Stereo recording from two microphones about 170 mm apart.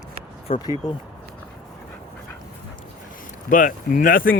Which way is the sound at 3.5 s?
50° left (ahead or behind).